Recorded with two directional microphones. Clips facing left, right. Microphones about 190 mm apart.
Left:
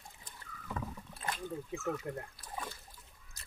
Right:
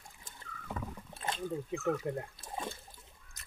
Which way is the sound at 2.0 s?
25° right (ahead or behind).